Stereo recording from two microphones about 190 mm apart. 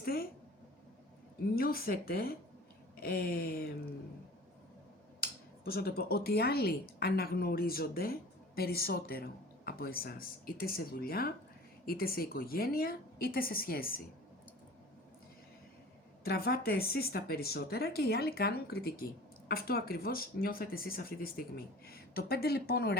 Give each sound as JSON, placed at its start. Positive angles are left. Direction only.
{"t": 0.0, "sound": "a sound", "side_deg": 55}
{"t": 1.5, "sound": "speech", "side_deg": 50}
{"t": 5.2, "sound": "speech", "side_deg": 55}
{"t": 16.2, "sound": "speech", "side_deg": 55}